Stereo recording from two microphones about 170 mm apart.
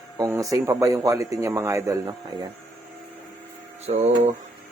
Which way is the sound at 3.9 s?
35° right (ahead or behind).